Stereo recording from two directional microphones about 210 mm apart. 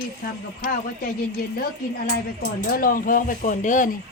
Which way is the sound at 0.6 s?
45° left (ahead or behind).